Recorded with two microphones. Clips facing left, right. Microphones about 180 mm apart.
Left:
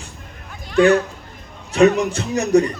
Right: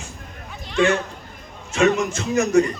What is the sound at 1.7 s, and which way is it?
Speech, 35° left (ahead or behind).